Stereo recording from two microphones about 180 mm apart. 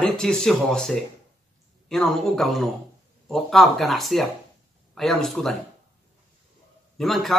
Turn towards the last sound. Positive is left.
turn(degrees=0)  # may be behind; listen again after turning